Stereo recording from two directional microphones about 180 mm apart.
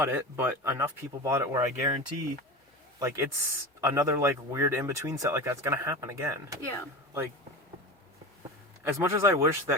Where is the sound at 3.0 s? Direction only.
15° right (ahead or behind).